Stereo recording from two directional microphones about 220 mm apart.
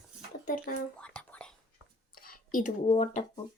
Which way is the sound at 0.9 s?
5° left (ahead or behind).